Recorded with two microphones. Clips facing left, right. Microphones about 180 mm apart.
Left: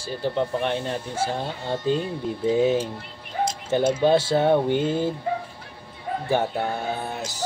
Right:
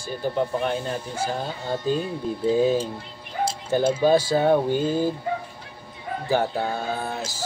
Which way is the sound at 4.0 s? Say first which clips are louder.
Right 1 dB; 25° left (ahead or behind).